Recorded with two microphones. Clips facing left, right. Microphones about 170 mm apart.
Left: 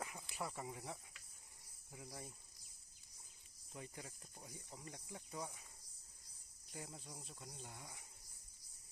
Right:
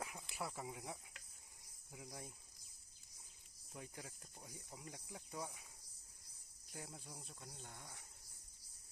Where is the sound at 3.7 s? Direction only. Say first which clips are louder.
Left 1 dB; centre (ahead or behind).